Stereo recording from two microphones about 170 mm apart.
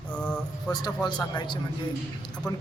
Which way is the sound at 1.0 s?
25° left (ahead or behind).